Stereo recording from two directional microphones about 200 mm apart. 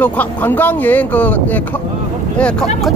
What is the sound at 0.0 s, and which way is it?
Speech, 10° left (ahead or behind).